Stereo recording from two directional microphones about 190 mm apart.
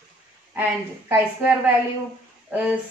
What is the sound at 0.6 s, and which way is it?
Speech, 10° right (ahead or behind).